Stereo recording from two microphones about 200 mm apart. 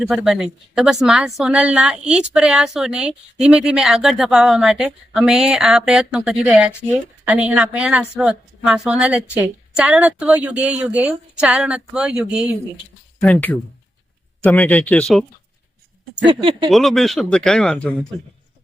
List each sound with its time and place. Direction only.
0.1 s a woman's voice: 5° right (ahead or behind)
13.2 s speech: 5° left (ahead or behind)
16.3 s speech: 25° right (ahead or behind)
16.6 s a woman's voice: centre (ahead or behind)